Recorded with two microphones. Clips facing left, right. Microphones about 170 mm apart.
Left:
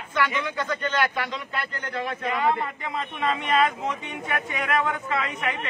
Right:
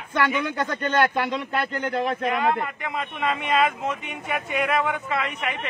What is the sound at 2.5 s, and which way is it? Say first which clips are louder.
Speech: right 1 dB; centre (ahead or behind).